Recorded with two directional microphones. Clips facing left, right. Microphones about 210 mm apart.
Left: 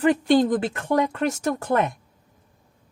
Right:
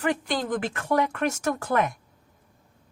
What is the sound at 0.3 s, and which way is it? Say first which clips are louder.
Speech: left 9 dB; 25° left (ahead or behind).